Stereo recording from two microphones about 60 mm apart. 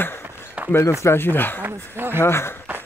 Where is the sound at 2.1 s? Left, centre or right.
Left.